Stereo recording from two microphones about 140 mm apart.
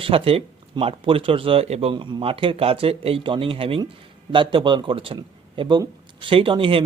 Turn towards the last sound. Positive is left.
turn(degrees=-40)  # may be behind; listen again after turning